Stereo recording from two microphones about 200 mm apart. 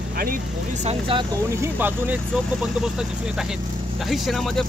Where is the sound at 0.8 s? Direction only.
25° right (ahead or behind).